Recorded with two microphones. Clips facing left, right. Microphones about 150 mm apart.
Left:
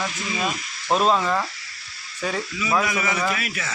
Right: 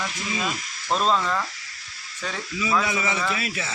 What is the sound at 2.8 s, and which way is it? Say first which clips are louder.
Speech: left 2 dB; 25° right (ahead or behind).